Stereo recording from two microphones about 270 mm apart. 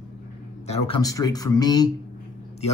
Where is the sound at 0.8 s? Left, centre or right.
Centre.